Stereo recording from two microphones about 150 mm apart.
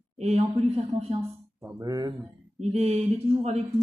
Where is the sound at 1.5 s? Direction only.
20° right (ahead or behind).